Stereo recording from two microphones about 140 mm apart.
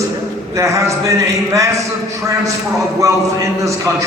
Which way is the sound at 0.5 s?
25° right (ahead or behind).